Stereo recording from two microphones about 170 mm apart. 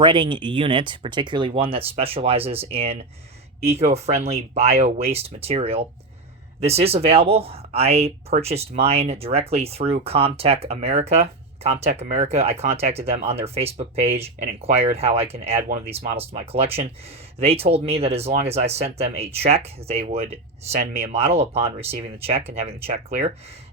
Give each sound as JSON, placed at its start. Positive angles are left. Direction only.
{"t": 0.0, "sound": "speech", "side_deg": -30}